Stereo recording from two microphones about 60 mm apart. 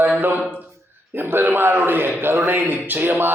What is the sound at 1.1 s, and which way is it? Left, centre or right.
A man's voice, right.